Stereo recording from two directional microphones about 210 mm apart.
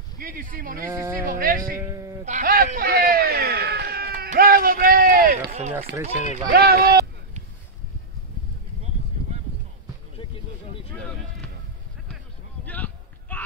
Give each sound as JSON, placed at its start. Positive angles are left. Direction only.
{"t": 0.2, "sound": "speech", "side_deg": -40}
{"t": 0.8, "sound": "speech", "side_deg": -10}
{"t": 1.2, "sound": "speech", "side_deg": -40}
{"t": 1.8, "sound": "speech", "side_deg": -15}
{"t": 2.2, "sound": "a man's voice", "side_deg": -40}
{"t": 12.6, "sound": "a sound", "side_deg": 5}